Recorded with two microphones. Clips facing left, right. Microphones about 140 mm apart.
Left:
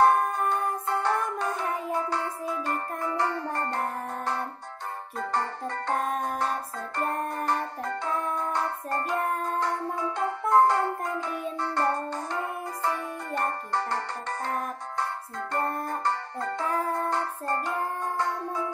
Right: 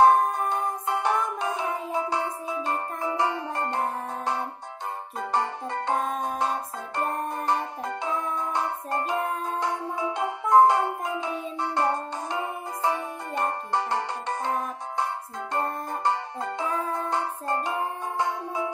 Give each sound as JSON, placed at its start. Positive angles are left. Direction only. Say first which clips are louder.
{"t": 0.0, "sound": "music", "louder": "right 3 dB", "side_deg": -15}